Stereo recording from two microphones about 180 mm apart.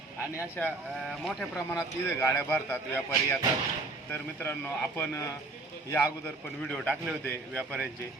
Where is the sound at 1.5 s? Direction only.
15° left (ahead or behind).